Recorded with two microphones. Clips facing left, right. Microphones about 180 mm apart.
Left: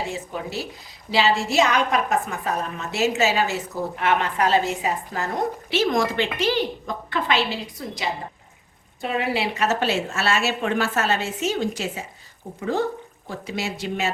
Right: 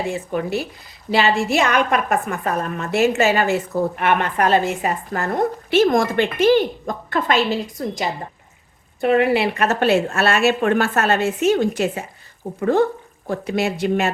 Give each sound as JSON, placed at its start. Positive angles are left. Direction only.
{"t": 0.1, "sound": "a woman's voice", "side_deg": -55}
{"t": 9.0, "sound": "a woman's voice", "side_deg": -60}